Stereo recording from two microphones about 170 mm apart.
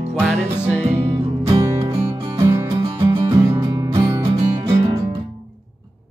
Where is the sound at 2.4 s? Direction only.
15° right (ahead or behind).